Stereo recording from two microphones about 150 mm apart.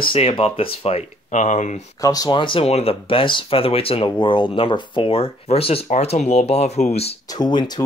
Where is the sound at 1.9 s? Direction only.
25° left (ahead or behind); by 7.1 s 45° left (ahead or behind).